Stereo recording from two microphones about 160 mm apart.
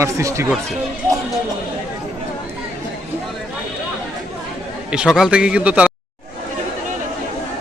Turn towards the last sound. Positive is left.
turn(degrees=-10)  # may be behind; listen again after turning